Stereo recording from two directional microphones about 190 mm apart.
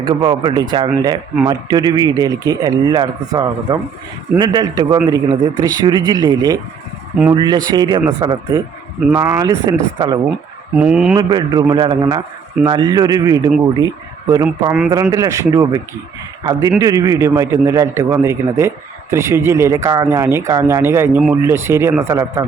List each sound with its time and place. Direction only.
0.0 s speech: 20° right (ahead or behind)
9.0 s a man's voice: 10° right (ahead or behind)
10.8 s a man's voice: 5° right (ahead or behind)
11.2 s a man's voice: 25° right (ahead or behind)